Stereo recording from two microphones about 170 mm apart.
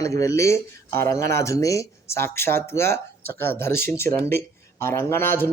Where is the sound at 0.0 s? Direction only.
20° left (ahead or behind).